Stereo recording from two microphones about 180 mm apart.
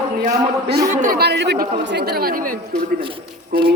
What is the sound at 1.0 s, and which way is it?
Speech, 55° right (ahead or behind).